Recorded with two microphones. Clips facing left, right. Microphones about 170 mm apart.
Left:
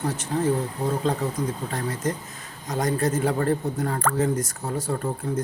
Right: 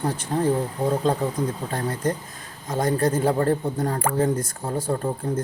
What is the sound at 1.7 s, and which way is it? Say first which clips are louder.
Speech: right 2 dB; 30° right (ahead or behind).